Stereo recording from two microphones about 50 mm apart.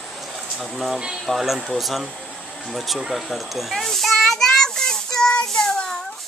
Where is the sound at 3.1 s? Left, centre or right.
Centre.